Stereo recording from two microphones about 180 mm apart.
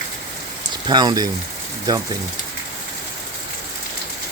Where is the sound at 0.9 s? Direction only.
25° right (ahead or behind).